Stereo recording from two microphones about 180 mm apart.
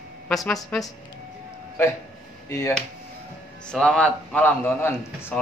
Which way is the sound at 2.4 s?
15° left (ahead or behind).